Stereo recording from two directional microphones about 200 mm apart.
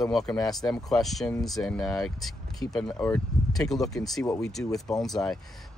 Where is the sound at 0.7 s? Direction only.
Centre (ahead or behind).